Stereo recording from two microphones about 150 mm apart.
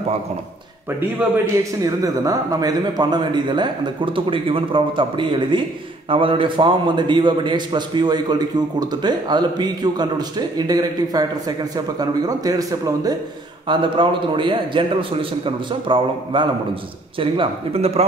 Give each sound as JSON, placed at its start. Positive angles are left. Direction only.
{"t": 1.2, "sound": "a man's voice", "side_deg": -10}
{"t": 1.8, "sound": "a man's voice", "side_deg": -25}